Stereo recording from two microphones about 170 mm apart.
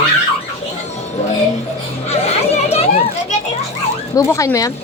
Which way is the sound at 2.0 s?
40° left (ahead or behind).